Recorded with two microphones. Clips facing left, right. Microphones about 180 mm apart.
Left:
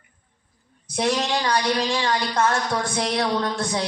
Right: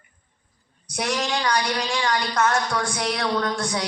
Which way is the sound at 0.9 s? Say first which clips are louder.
Left 3 dB; 30° left (ahead or behind).